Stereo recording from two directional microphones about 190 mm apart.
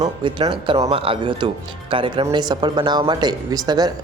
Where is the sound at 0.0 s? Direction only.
25° right (ahead or behind).